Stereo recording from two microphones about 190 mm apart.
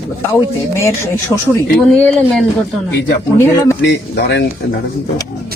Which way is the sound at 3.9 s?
65° left (ahead or behind).